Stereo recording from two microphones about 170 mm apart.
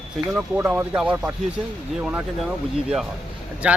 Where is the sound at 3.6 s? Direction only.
10° right (ahead or behind).